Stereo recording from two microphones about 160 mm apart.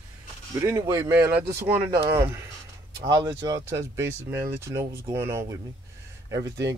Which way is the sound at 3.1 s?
25° right (ahead or behind).